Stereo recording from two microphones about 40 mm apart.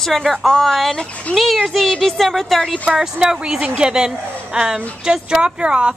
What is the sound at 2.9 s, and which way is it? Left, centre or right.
A woman's voice, centre.